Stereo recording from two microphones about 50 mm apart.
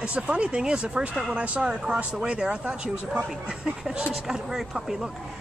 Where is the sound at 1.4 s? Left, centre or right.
Right.